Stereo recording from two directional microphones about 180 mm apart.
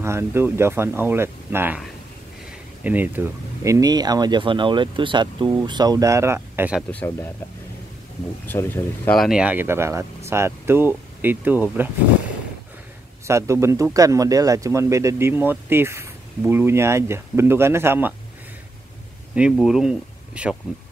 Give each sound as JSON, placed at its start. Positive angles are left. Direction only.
{"t": 0.0, "sound": "speech", "side_deg": -15}
{"t": 2.8, "sound": "speech", "side_deg": -10}
{"t": 7.1, "sound": "speech", "side_deg": 10}
{"t": 8.5, "sound": "speech", "side_deg": 10}
{"t": 9.2, "sound": "speech", "side_deg": -5}
{"t": 13.3, "sound": "speech", "side_deg": -15}
{"t": 19.5, "sound": "speech", "side_deg": 0}